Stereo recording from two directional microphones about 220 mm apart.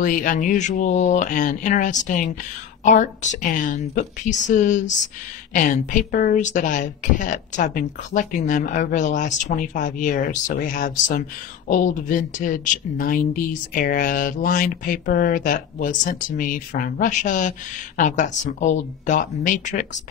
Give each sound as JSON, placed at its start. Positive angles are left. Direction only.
{"t": 0.0, "sound": "a woman's voice", "side_deg": 40}